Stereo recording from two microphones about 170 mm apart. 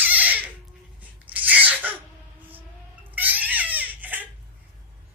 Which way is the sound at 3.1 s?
10° right (ahead or behind).